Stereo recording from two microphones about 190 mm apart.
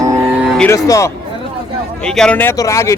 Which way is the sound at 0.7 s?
15° left (ahead or behind).